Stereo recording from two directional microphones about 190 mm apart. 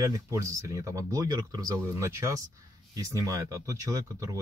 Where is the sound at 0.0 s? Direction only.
15° right (ahead or behind).